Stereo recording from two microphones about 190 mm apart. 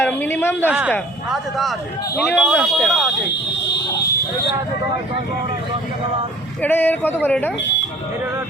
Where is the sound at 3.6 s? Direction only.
70° left (ahead or behind).